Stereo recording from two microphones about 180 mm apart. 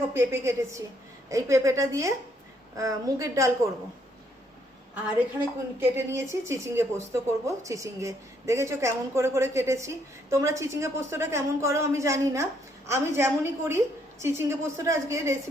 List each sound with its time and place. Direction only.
0.1 s speech: 15° right (ahead or behind)
5.8 s speech: 15° right (ahead or behind)